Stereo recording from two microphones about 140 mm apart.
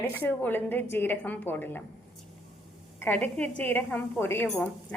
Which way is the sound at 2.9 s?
10° left (ahead or behind).